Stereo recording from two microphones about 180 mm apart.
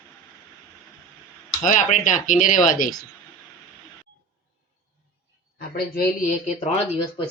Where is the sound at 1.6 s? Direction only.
45° left (ahead or behind).